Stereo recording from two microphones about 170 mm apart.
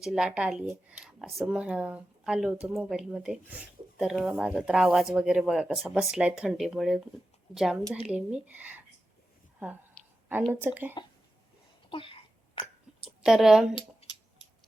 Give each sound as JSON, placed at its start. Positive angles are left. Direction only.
{"t": 0.0, "sound": "speech", "side_deg": -5}
{"t": 10.0, "sound": "a sound", "side_deg": 5}
{"t": 10.5, "sound": "speech", "side_deg": -10}
{"t": 11.9, "sound": "sneeze", "side_deg": 30}
{"t": 13.2, "sound": "speech", "side_deg": 0}